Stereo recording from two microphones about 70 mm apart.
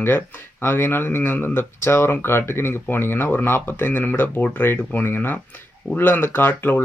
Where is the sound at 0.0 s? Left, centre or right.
Left.